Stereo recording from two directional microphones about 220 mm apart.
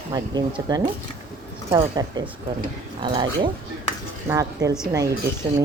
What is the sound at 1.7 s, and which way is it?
Speech, 20° right (ahead or behind).